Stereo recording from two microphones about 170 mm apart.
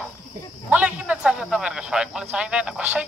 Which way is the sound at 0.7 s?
10° right (ahead or behind).